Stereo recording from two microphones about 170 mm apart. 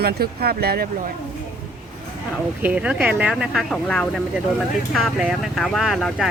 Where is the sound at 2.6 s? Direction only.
5° right (ahead or behind).